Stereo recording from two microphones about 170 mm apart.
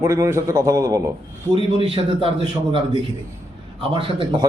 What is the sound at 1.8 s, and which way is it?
Speech, 35° right (ahead or behind).